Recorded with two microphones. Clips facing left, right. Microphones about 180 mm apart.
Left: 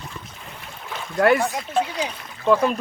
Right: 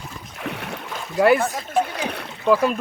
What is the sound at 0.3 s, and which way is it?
Boat, 75° right (ahead or behind).